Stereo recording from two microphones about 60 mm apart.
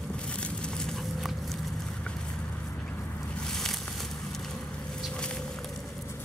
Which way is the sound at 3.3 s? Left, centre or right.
Centre.